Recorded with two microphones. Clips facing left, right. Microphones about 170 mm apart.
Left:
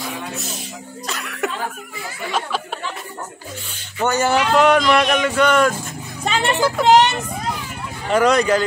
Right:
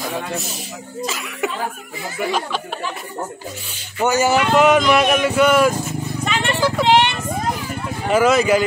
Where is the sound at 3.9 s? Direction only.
10° right (ahead or behind).